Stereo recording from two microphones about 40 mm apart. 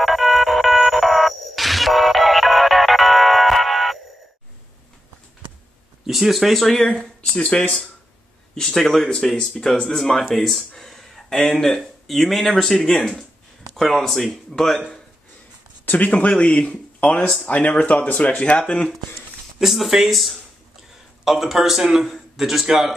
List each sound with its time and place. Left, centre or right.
0.0 s music: centre
6.0 s speech: centre
6.7 s speech: centre
7.2 s speech: left
8.5 s speech: centre
10.8 s a sound: centre
12.2 s speech: centre
15.8 s a sound: left
16.1 s speech: left
19.6 s a man's voice: centre